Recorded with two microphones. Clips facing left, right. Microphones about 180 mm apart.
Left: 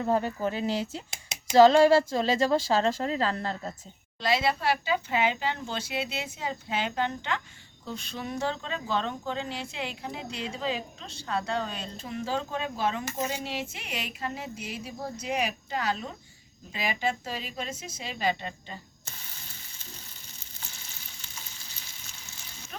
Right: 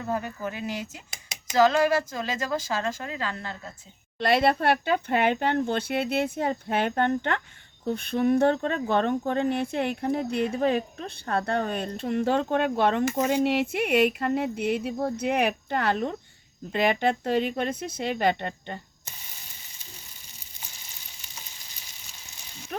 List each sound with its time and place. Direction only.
0.0 s speech: 30° left (ahead or behind)
4.2 s speech: 60° right (ahead or behind)